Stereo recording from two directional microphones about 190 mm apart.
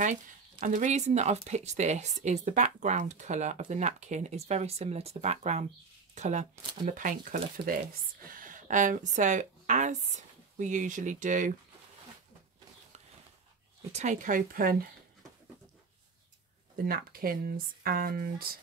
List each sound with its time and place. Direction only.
0.0 s speech: 40° right (ahead or behind)
13.9 s speech: 40° right (ahead or behind)
16.7 s speech: 50° right (ahead or behind)